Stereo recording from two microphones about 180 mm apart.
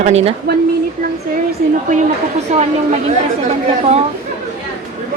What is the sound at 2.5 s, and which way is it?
Speech, 40° right (ahead or behind).